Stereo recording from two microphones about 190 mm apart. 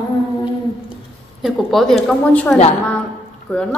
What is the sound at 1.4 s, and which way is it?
A woman's voice, centre (ahead or behind).